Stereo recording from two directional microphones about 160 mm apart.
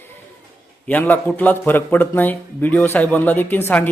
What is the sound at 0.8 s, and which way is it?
Speech, 10° left (ahead or behind).